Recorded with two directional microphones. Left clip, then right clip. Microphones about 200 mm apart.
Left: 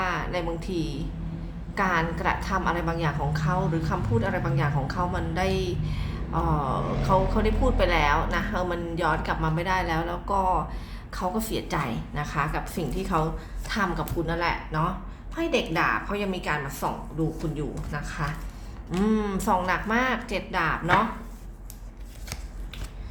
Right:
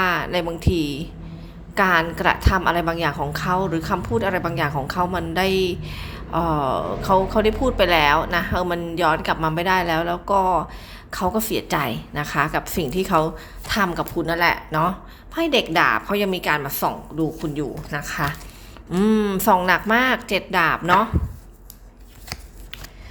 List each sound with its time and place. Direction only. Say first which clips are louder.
0.0 s a woman's voice: right 7 dB; 35° right (ahead or behind)
18.9 s a woman's voice: right 6 dB; 30° right (ahead or behind)